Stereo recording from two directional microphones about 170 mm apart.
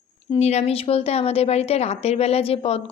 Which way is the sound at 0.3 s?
40° left (ahead or behind).